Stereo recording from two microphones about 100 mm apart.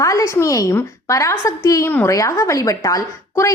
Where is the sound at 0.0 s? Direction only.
30° left (ahead or behind).